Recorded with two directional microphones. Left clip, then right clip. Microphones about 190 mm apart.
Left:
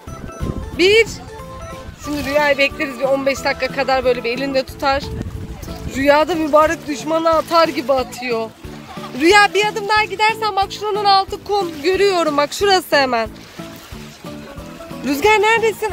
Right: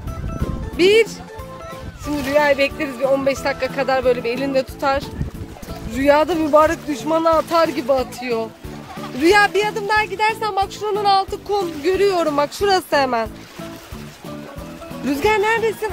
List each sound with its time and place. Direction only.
0.7 s speech: centre (ahead or behind)
2.0 s speech: 15° right (ahead or behind); by 13.3 s 5° left (ahead or behind)
15.0 s speech: 15° left (ahead or behind)